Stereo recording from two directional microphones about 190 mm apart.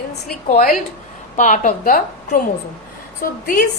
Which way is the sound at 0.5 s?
50° left (ahead or behind).